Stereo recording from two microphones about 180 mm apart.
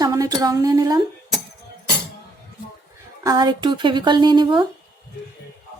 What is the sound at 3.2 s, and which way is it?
Speech, 20° right (ahead or behind).